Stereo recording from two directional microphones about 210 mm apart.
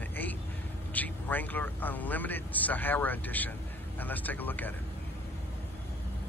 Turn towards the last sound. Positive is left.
turn(degrees=10)  # may be behind; listen again after turning